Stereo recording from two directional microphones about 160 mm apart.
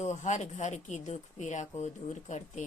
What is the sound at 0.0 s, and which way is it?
Speech, 45° left (ahead or behind).